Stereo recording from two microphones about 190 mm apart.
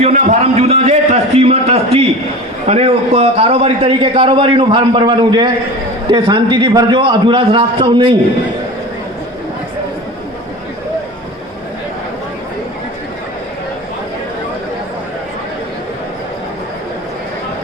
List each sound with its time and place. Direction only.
0.0 s a man's voice: 40° right (ahead or behind)